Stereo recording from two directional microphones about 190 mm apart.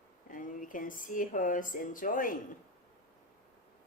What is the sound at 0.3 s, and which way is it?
Speech, 45° left (ahead or behind).